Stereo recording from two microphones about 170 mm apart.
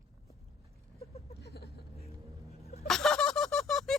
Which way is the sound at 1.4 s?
70° left (ahead or behind).